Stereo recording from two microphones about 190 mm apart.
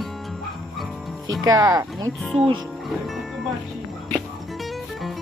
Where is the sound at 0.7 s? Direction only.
Centre (ahead or behind).